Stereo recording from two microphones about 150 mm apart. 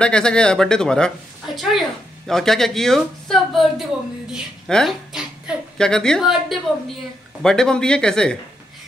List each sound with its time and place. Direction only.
0.0 s a woman's voice: 5° left (ahead or behind)